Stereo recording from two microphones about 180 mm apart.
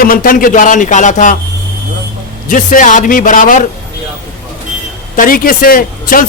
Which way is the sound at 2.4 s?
45° left (ahead or behind).